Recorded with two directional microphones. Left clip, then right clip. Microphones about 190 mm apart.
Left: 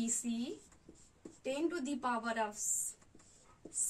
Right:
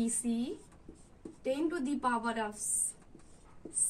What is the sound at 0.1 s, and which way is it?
A woman's voice, 10° left (ahead or behind).